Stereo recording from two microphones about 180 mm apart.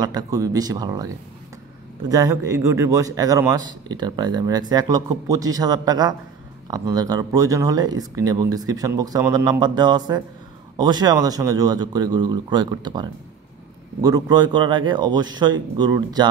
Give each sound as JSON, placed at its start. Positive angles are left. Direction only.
{"t": 0.0, "sound": "a man's voice", "side_deg": -20}
{"t": 14.0, "sound": "a man's voice", "side_deg": -20}